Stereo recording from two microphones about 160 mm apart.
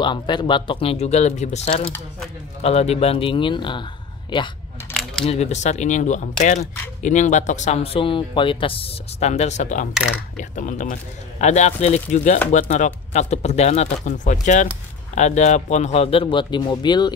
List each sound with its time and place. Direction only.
0.0 s speech: 30° left (ahead or behind)
5.2 s speech: 40° left (ahead or behind)